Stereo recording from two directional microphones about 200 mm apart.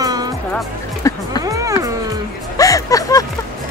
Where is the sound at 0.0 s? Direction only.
20° right (ahead or behind).